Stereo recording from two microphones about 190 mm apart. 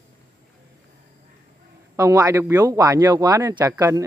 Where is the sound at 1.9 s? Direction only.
15° right (ahead or behind).